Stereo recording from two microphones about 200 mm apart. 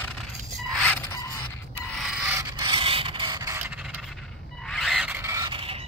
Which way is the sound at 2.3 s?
20° right (ahead or behind).